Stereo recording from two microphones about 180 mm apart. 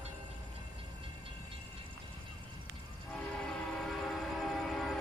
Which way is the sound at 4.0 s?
Centre (ahead or behind).